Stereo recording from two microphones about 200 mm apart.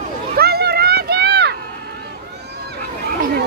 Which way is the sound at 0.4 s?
50° right (ahead or behind).